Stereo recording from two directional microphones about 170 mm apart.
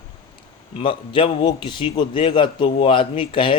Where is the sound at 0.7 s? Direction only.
30° left (ahead or behind).